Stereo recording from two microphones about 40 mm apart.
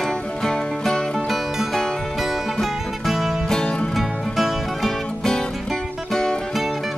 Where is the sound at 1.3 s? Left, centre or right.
Centre.